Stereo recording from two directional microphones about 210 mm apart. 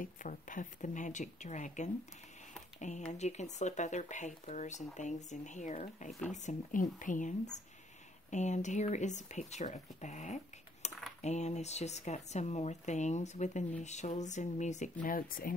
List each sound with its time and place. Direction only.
0.0 s speech: 40° left (ahead or behind)
3.1 s speech: 35° left (ahead or behind)